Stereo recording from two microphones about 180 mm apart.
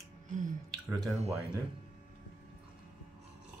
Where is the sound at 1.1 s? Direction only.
35° right (ahead or behind).